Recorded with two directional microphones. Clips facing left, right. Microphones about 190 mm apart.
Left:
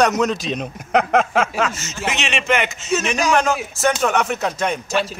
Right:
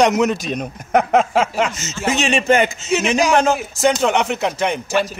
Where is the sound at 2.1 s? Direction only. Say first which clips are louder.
Right 5 dB; 35° right (ahead or behind).